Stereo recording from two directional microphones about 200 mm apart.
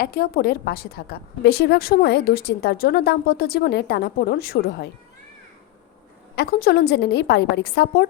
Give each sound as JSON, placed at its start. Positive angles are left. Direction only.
{"t": 0.0, "sound": "a woman's voice", "side_deg": 50}
{"t": 6.3, "sound": "a woman's voice", "side_deg": 55}